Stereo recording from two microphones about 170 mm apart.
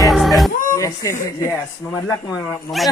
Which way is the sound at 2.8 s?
Centre (ahead or behind).